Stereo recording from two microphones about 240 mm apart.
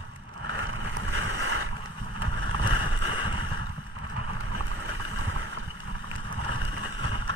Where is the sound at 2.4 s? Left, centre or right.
Right.